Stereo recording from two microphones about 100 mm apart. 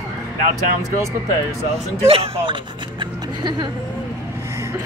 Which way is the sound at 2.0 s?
70° right (ahead or behind).